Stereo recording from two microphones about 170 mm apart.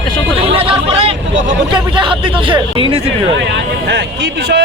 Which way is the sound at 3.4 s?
90° right.